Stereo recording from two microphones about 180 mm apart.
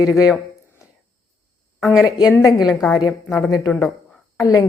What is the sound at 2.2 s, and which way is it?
Speech, 20° left (ahead or behind).